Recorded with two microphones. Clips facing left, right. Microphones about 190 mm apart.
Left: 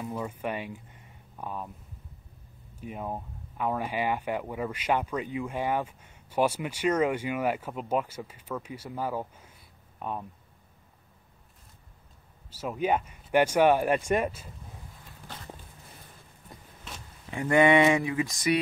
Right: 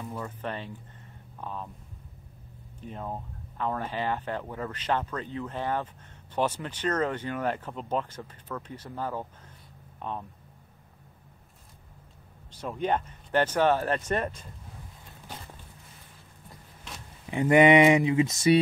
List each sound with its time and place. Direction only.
0.0 s speech: 10° left (ahead or behind)
2.8 s speech: 10° left (ahead or behind)
12.4 s speech: 5° left (ahead or behind)
17.3 s speech: 20° right (ahead or behind)